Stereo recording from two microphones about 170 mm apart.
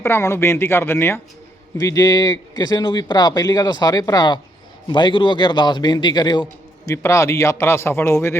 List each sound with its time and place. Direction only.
0.0 s a man's voice: 15° left (ahead or behind)